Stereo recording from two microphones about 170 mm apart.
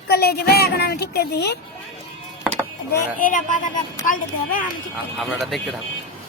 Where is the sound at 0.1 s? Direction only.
65° left (ahead or behind).